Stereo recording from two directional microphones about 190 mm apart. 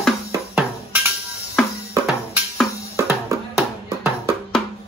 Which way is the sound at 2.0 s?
5° right (ahead or behind).